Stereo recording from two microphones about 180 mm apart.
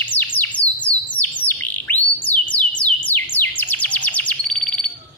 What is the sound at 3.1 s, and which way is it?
Chirp, 10° left (ahead or behind).